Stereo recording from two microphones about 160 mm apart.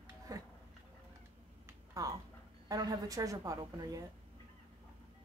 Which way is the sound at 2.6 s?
25° right (ahead or behind).